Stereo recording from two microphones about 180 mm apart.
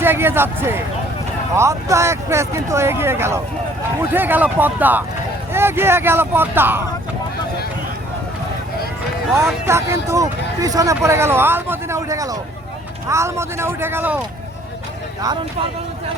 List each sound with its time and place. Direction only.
0.0 s speech: 10° right (ahead or behind)
9.6 s speech: 15° right (ahead or behind)
15.2 s speech: 25° right (ahead or behind)